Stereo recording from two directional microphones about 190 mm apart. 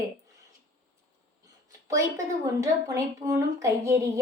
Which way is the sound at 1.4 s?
15° right (ahead or behind).